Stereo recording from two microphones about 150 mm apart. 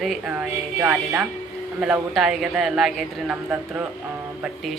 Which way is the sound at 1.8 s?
Centre (ahead or behind).